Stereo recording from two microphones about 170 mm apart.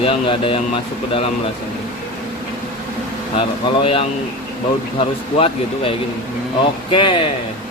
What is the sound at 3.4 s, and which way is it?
Speech, 30° left (ahead or behind).